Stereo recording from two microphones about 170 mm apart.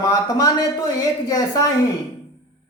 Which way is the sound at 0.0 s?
20° left (ahead or behind).